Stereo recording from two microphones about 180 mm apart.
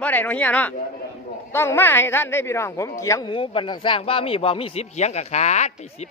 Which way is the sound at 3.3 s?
30° left (ahead or behind).